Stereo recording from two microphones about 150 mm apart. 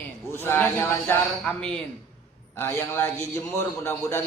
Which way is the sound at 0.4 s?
15° left (ahead or behind).